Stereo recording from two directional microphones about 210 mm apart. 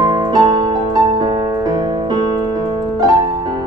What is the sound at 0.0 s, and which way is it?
Music, 20° right (ahead or behind).